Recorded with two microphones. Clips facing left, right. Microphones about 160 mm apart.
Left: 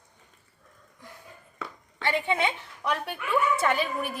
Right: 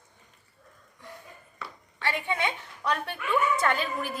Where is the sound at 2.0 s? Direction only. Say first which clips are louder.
Left 3 dB; 20° left (ahead or behind).